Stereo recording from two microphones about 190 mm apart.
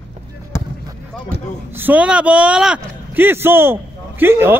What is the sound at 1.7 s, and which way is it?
Speech, 10° right (ahead or behind).